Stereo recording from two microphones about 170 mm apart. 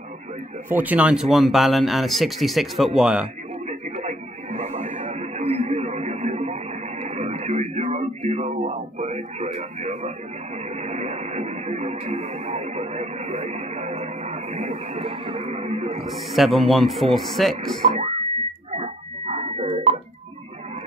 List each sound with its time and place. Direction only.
0.7 s speech: 10° right (ahead or behind)
3.6 s a sound: 40° right (ahead or behind)
8.5 s a man's voice: 45° right (ahead or behind)
10.8 s music: 40° right (ahead or behind)
16.0 s speech: centre (ahead or behind)
17.8 s speech: 45° right (ahead or behind)
18.2 s a sound: 20° left (ahead or behind)
18.7 s music: 40° right (ahead or behind)